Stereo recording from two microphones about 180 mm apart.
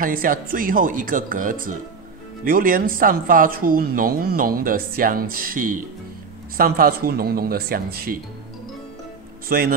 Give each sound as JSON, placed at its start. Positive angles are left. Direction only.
{"t": 0.0, "sound": "speech", "side_deg": -50}
{"t": 9.5, "sound": "speech", "side_deg": -55}